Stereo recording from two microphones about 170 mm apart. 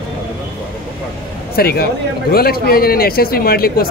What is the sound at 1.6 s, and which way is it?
A man's voice, 65° left (ahead or behind).